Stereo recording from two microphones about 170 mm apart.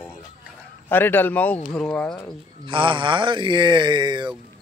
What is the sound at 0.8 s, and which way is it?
A man's voice, 10° left (ahead or behind).